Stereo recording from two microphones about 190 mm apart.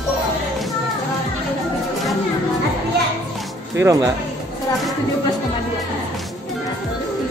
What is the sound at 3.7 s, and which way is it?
Speech, 15° right (ahead or behind).